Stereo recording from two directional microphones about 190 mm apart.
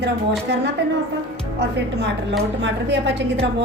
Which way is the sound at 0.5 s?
65° right (ahead or behind).